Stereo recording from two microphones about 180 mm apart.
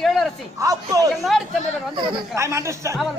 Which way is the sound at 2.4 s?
15° right (ahead or behind).